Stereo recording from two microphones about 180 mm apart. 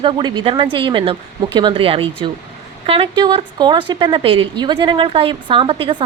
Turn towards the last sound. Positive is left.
turn(degrees=-30)  # may be behind; listen again after turning